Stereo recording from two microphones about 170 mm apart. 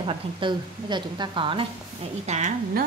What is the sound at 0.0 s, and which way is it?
Speech, 30° right (ahead or behind).